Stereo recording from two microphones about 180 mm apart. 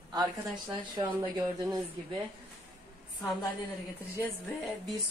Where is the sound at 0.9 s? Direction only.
20° right (ahead or behind).